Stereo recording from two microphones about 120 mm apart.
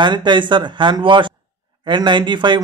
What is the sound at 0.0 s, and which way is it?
A man's voice, 40° right (ahead or behind).